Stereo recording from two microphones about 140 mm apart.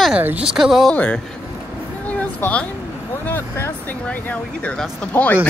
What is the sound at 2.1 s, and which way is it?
Speech, 10° left (ahead or behind).